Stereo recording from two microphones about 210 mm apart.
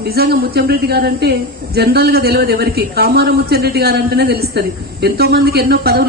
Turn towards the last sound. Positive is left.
turn(degrees=-50)  # may be behind; listen again after turning